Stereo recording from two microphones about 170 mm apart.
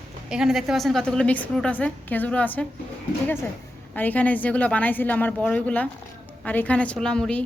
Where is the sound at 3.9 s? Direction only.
10° left (ahead or behind).